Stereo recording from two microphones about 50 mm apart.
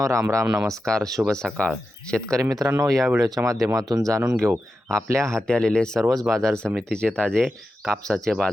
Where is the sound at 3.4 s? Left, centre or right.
Right.